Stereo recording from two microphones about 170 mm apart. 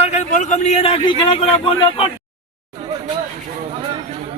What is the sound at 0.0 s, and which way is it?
A man's voice, 40° left (ahead or behind).